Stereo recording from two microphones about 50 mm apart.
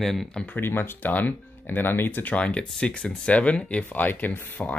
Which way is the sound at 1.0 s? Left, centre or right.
Left.